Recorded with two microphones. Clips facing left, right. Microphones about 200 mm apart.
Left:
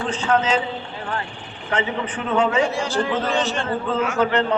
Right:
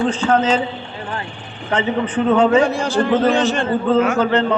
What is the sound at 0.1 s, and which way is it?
Speech, 30° right (ahead or behind).